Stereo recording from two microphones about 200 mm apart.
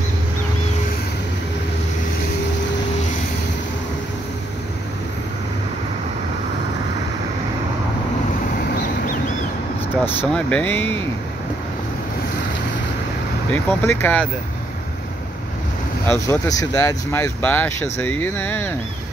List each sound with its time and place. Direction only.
8.5 s vehicle: 45° left (ahead or behind)
10.0 s speech: 5° left (ahead or behind)
13.5 s speech: 10° left (ahead or behind)
16.1 s speech: 15° left (ahead or behind)